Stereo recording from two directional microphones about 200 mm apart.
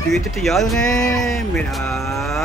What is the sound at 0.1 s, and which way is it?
Speech, centre (ahead or behind).